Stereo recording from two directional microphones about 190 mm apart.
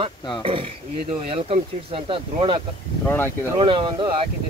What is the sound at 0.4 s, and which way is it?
Speech, 30° right (ahead or behind).